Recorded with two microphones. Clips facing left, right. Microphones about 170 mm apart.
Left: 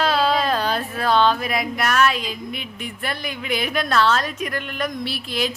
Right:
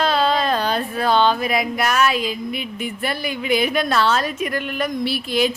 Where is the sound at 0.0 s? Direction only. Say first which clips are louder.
Right 1 dB; 5° left (ahead or behind).